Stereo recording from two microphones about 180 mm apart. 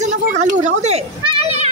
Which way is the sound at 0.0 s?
40° right (ahead or behind).